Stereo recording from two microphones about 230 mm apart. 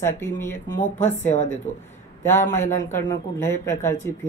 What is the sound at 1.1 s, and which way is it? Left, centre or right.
Speech, left.